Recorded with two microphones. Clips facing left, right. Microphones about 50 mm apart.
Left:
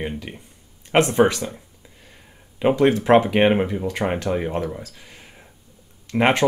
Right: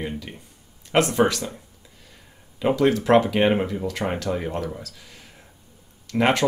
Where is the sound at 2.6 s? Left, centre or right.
Left.